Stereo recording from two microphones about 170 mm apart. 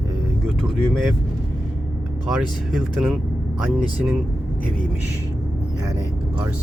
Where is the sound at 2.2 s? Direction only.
5° right (ahead or behind).